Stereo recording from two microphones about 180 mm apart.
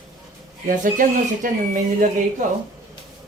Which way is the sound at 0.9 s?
50° right (ahead or behind).